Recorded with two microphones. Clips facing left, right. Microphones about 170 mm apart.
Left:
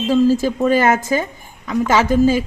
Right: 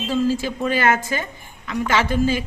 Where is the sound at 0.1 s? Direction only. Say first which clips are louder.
Left 6 dB; 45° left (ahead or behind).